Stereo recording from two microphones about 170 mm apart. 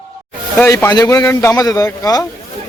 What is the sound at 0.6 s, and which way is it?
A man's voice, 15° left (ahead or behind).